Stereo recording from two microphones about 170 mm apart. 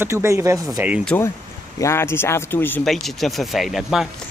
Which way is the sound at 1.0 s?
10° left (ahead or behind).